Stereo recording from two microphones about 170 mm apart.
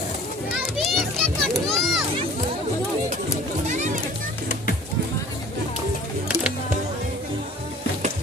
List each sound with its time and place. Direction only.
0.6 s children playing: centre (ahead or behind)
3.6 s music: 45° right (ahead or behind)